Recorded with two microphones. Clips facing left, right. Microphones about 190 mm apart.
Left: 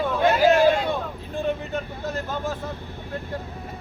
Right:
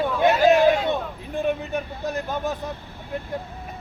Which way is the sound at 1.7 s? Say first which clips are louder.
Right 2 dB; 15° right (ahead or behind).